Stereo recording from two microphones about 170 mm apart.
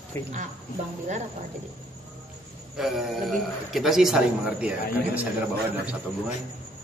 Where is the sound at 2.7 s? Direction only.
Centre (ahead or behind).